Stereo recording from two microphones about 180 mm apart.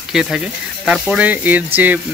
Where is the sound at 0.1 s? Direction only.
5° right (ahead or behind).